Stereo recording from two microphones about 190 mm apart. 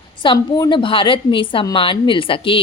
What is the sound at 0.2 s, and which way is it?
A woman's voice, 25° left (ahead or behind).